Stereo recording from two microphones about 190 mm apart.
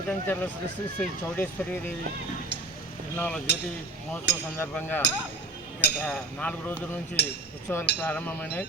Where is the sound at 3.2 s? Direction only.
5° left (ahead or behind).